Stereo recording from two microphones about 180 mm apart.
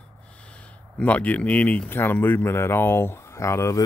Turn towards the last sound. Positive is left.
turn(degrees=15)  # may be behind; listen again after turning